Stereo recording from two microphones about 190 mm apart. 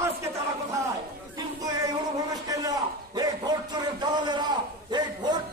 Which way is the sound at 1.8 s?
20° right (ahead or behind).